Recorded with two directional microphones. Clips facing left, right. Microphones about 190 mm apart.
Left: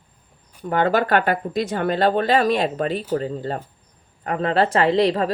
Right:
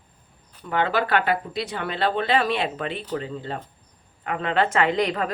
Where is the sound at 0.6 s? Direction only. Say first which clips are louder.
Left 4 dB; 45° left (ahead or behind).